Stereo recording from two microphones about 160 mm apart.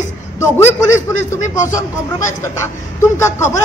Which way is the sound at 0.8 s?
20° left (ahead or behind).